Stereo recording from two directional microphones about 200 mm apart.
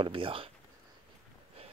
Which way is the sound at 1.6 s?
30° right (ahead or behind).